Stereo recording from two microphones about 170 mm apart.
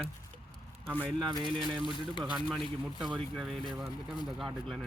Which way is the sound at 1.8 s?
30° left (ahead or behind).